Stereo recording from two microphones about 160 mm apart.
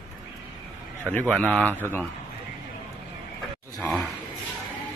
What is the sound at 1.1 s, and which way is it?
Speech, 10° left (ahead or behind).